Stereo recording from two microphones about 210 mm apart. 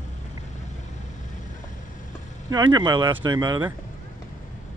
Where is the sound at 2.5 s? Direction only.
20° right (ahead or behind).